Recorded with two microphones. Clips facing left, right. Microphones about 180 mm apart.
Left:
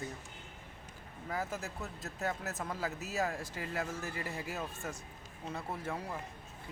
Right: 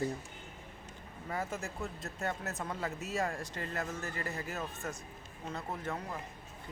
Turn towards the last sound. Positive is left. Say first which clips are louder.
# even
turn(degrees=10)  # may be behind; listen again after turning